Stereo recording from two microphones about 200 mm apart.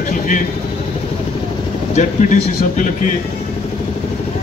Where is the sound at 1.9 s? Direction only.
40° left (ahead or behind).